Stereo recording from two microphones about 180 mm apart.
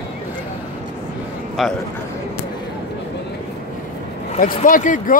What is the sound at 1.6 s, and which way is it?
Speech, centre (ahead or behind).